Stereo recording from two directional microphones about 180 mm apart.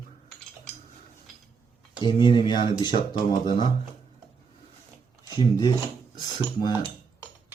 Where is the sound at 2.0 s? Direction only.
25° left (ahead or behind).